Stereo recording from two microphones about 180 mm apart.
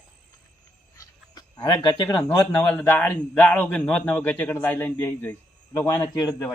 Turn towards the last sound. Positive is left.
turn(degrees=20)  # may be behind; listen again after turning